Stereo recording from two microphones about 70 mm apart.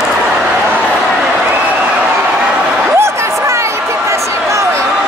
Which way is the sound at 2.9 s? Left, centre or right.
Right.